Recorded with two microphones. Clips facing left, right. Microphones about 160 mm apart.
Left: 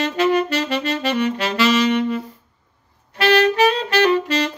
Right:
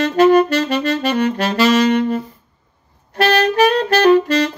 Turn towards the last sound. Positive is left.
turn(degrees=-45)  # may be behind; listen again after turning